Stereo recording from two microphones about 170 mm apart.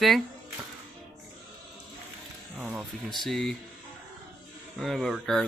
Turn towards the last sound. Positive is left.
turn(degrees=0)  # may be behind; listen again after turning